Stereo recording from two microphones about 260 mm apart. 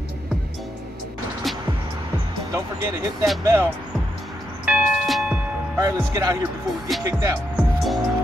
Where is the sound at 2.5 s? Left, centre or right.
Centre.